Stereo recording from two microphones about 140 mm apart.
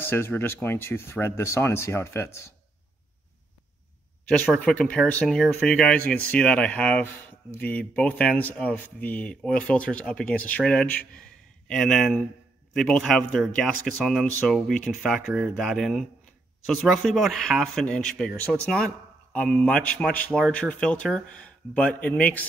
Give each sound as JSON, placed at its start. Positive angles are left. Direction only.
{"t": 0.0, "sound": "speech", "side_deg": 15}
{"t": 4.3, "sound": "speech", "side_deg": 5}